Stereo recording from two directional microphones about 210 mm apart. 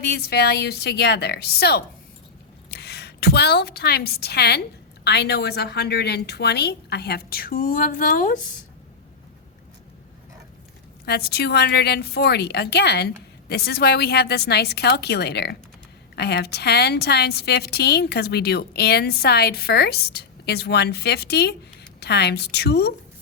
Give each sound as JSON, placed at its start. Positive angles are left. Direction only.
{"t": 0.0, "sound": "a woman's voice", "side_deg": 50}
{"t": 11.0, "sound": "a woman's voice", "side_deg": 50}